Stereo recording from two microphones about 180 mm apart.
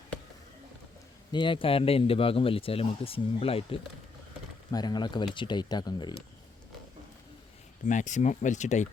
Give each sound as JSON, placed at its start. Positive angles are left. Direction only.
{"t": 1.3, "sound": "speech", "side_deg": 25}
{"t": 7.9, "sound": "speech", "side_deg": 45}